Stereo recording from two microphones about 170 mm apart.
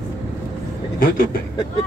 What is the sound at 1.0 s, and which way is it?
Speech, 60° left (ahead or behind).